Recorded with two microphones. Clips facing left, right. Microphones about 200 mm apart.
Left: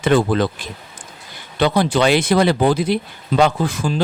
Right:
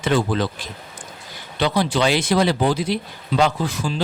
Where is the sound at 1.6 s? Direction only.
50° left (ahead or behind).